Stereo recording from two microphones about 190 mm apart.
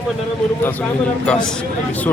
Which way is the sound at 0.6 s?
10° left (ahead or behind).